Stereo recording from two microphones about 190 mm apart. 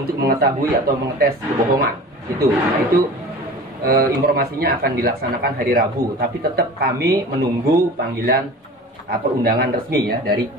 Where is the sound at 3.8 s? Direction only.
50° right (ahead or behind).